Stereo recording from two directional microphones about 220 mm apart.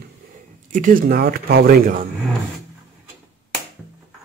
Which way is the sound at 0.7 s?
35° right (ahead or behind).